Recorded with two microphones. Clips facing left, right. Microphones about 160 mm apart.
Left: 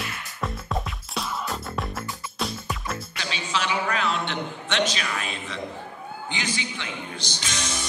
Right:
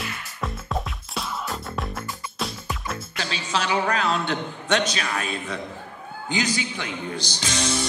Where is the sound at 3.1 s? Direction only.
40° right (ahead or behind).